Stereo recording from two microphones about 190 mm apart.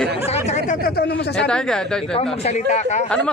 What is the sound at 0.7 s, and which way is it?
Speech, 55° left (ahead or behind).